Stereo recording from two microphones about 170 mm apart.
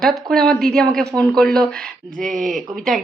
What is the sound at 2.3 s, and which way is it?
Speech, 50° right (ahead or behind).